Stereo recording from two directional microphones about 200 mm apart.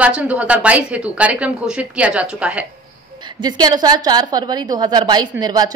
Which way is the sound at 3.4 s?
20° right (ahead or behind).